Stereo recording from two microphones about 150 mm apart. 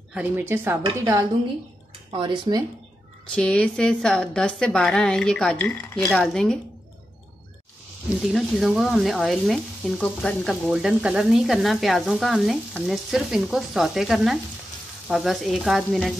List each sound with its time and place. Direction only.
0.1 s speech: 10° right (ahead or behind)
2.0 s speech: 35° right (ahead or behind)
3.3 s speech: 5° left (ahead or behind)
8.3 s speech: centre (ahead or behind)